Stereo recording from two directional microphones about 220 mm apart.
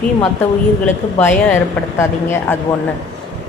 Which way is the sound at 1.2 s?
5° left (ahead or behind).